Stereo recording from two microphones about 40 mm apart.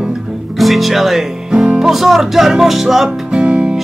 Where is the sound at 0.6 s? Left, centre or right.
Centre.